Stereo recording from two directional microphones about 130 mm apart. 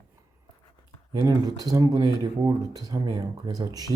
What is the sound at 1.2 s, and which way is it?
Speech, 30° right (ahead or behind).